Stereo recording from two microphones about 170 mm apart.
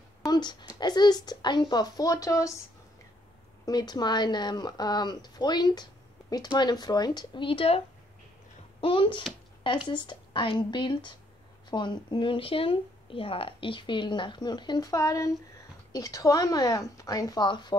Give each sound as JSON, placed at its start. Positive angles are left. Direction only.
{"t": 0.3, "sound": "a woman's voice", "side_deg": 25}
{"t": 3.6, "sound": "speech", "side_deg": 25}
{"t": 8.8, "sound": "speech", "side_deg": 30}